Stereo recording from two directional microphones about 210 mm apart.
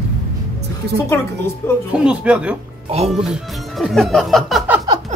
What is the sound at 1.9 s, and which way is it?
Speech, 5° right (ahead or behind).